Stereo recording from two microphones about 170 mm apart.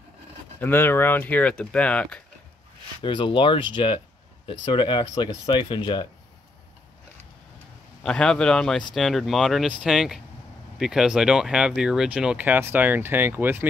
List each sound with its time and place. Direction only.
0.6 s speech: 10° left (ahead or behind)
3.0 s speech: 30° left (ahead or behind)
8.0 s speech: 5° left (ahead or behind); by 13.7 s 10° right (ahead or behind)